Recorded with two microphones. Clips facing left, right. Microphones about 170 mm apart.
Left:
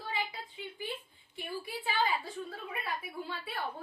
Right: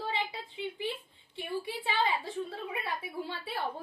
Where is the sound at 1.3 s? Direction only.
25° right (ahead or behind).